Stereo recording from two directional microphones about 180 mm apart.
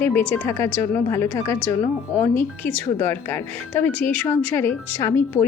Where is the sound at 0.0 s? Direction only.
10° left (ahead or behind).